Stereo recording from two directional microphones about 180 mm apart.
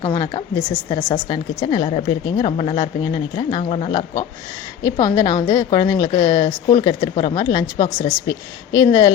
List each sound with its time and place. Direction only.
0.0 s a woman's voice: 20° left (ahead or behind)
0.9 s a woman's voice: 30° left (ahead or behind)